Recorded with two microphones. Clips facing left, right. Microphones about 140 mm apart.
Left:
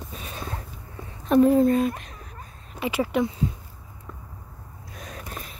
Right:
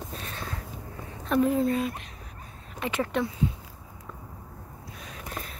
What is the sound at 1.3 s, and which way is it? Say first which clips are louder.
Speech: left 6 dB; 35° left (ahead or behind).